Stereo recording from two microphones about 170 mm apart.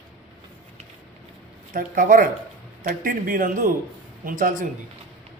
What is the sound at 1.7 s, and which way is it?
A man's voice, 55° right (ahead or behind).